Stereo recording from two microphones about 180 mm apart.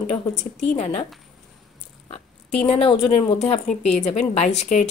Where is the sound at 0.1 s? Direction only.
35° left (ahead or behind).